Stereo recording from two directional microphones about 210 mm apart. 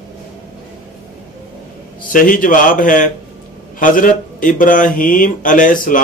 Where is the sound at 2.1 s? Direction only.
40° left (ahead or behind).